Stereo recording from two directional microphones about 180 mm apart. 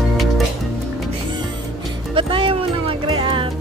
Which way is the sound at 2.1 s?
30° right (ahead or behind).